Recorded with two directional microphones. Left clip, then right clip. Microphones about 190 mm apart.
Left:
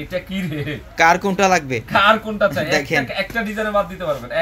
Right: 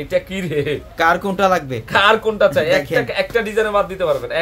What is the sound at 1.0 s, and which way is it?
Speech, 10° left (ahead or behind).